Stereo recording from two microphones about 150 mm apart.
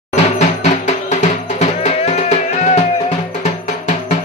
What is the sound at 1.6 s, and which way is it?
Music, 50° left (ahead or behind).